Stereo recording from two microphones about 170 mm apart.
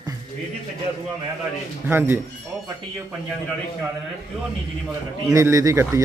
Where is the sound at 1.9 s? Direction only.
10° right (ahead or behind).